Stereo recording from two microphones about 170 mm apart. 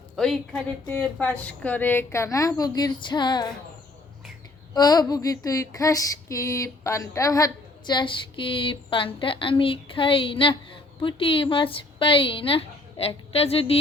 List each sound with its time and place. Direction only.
0.2 s speech: 5° left (ahead or behind); by 3.5 s 25° left (ahead or behind)
4.7 s female singing: 25° left (ahead or behind)
11.0 s a woman's voice: 30° left (ahead or behind)